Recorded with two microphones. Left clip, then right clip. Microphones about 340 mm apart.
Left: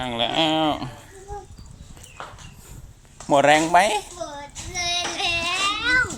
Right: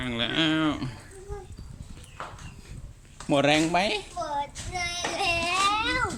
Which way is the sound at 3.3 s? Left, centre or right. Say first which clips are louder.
Left 7 dB; left.